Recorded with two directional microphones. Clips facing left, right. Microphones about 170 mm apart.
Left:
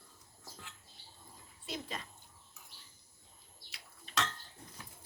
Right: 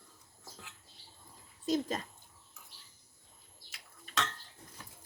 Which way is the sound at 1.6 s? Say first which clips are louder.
Right 11 dB; 40° right (ahead or behind).